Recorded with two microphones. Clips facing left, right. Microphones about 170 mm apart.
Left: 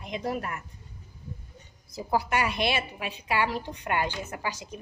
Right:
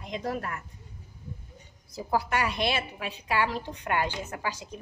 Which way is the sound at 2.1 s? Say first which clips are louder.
Left 1 dB; 15° left (ahead or behind).